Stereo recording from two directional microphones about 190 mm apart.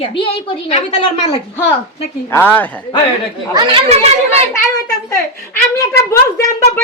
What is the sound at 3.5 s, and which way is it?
Speech, 30° right (ahead or behind).